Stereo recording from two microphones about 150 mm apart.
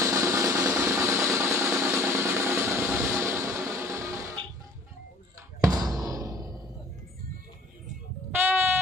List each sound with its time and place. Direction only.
0.0 s drum: 20° right (ahead or behind)
5.6 s music: 25° right (ahead or behind)
8.4 s music: 15° right (ahead or behind)